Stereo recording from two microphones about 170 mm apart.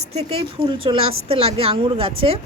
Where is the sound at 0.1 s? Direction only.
35° right (ahead or behind).